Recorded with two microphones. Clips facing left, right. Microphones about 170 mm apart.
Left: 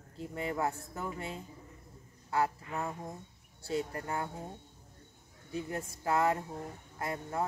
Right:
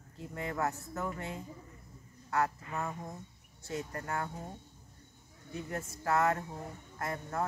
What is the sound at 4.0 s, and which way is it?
Speech, 15° left (ahead or behind).